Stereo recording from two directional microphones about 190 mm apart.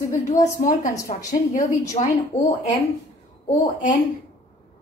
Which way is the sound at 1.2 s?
15° left (ahead or behind).